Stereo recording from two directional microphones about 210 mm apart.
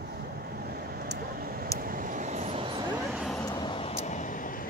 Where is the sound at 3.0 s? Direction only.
Centre (ahead or behind).